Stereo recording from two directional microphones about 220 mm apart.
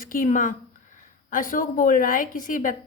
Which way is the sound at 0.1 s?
35° left (ahead or behind).